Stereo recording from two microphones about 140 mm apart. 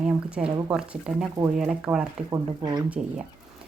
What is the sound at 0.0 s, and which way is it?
Speech, 5° right (ahead or behind).